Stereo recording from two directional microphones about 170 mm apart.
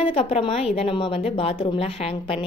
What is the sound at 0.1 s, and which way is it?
A woman's voice, 35° left (ahead or behind).